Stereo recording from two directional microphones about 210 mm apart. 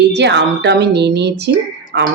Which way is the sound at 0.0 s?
55° right (ahead or behind).